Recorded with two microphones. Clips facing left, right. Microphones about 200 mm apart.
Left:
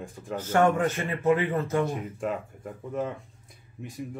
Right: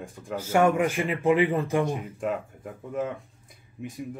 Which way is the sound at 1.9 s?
Centre (ahead or behind).